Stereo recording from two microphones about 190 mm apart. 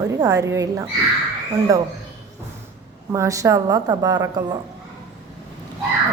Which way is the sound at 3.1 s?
15° right (ahead or behind).